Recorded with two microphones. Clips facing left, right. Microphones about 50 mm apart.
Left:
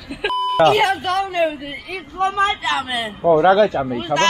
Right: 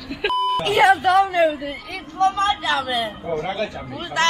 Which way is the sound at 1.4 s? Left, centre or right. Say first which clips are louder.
Right 1 dB; centre.